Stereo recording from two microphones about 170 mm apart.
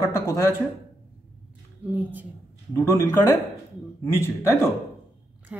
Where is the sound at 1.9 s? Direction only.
10° right (ahead or behind).